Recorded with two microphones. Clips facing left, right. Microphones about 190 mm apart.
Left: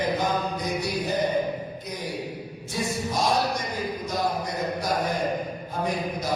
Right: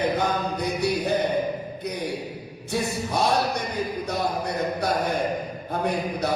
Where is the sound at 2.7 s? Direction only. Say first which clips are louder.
Right 2 dB; 65° right (ahead or behind).